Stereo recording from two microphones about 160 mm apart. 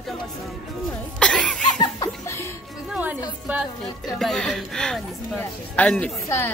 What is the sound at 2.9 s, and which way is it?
Music, 10° right (ahead or behind).